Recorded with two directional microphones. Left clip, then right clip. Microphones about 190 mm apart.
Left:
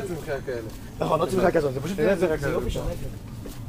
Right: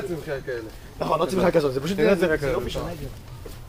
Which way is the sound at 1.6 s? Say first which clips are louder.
Right 2 dB; 50° right (ahead or behind).